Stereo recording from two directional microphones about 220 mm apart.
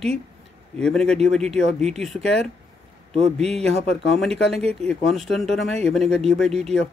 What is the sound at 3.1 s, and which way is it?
Speech, 30° right (ahead or behind).